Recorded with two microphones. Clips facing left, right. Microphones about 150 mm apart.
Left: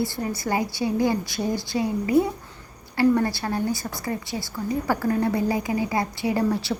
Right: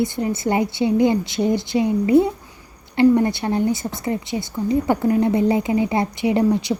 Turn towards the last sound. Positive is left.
turn(degrees=-20)  # may be behind; listen again after turning